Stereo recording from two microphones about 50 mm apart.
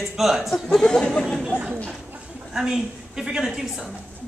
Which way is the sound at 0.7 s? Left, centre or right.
Centre.